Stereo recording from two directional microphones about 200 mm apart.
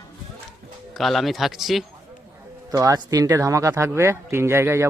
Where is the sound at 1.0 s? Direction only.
Centre (ahead or behind).